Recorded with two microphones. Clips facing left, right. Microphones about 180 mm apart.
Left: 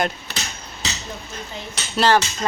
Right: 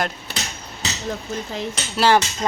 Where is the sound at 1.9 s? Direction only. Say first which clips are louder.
Even; 10° right (ahead or behind).